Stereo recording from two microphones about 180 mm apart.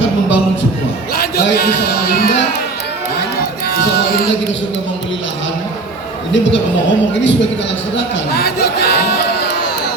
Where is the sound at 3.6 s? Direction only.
60° left (ahead or behind).